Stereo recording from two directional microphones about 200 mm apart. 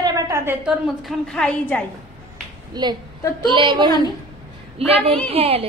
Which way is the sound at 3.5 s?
25° right (ahead or behind).